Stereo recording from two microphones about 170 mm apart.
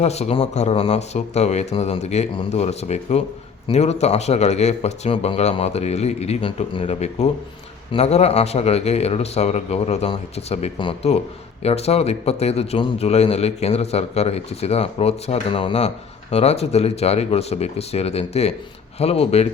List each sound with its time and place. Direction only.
0.0 s a man's voice: 40° left (ahead or behind)